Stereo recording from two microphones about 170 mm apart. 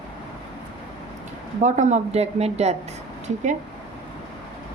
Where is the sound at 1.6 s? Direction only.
45° right (ahead or behind).